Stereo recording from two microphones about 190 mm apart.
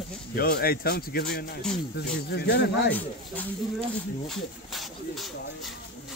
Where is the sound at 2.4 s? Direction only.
60° left (ahead or behind).